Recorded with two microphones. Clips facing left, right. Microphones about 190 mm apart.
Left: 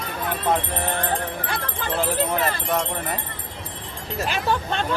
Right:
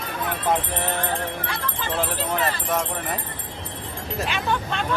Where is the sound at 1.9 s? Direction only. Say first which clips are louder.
Left 3 dB; centre (ahead or behind).